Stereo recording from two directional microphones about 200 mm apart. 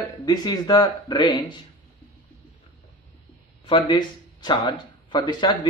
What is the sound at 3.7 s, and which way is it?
Speech, 25° left (ahead or behind).